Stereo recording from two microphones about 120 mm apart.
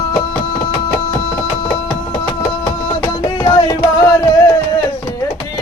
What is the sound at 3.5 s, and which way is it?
Music, 30° left (ahead or behind).